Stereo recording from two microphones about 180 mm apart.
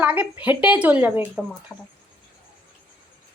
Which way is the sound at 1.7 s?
10° left (ahead or behind).